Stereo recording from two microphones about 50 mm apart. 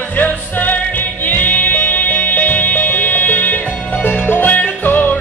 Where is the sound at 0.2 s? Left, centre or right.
Left.